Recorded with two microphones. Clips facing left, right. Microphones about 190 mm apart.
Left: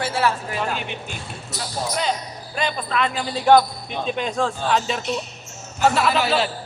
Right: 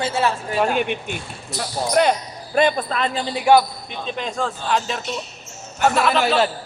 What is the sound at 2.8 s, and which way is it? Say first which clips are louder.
Speech: even; 35° right (ahead or behind).